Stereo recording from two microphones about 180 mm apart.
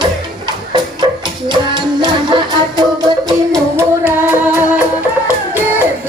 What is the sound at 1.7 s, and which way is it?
Music, 25° right (ahead or behind).